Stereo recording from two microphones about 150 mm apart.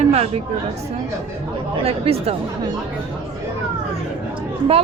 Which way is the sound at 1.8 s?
40° right (ahead or behind).